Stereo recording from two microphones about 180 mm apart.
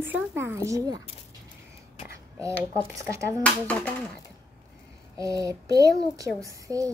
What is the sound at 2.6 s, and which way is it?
Speech, 15° right (ahead or behind).